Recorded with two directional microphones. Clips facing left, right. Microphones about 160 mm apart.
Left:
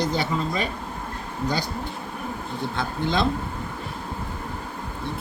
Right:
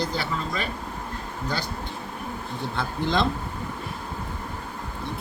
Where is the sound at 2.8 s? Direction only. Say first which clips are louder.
Even; centre (ahead or behind).